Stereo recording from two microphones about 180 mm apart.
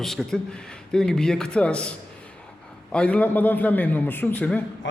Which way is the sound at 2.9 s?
5° left (ahead or behind).